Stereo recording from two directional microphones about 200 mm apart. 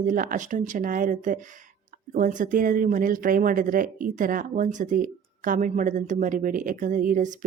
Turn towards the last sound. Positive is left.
turn(degrees=-40)  # may be behind; listen again after turning